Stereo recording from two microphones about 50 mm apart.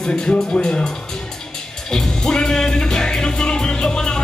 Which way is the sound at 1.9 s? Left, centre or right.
Centre.